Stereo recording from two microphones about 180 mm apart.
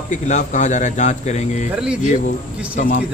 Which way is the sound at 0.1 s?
40° left (ahead or behind).